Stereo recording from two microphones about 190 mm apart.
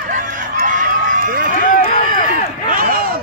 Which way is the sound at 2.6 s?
50° right (ahead or behind).